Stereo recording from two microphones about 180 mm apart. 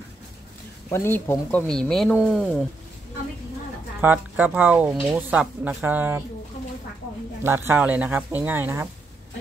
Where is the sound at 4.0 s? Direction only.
10° right (ahead or behind).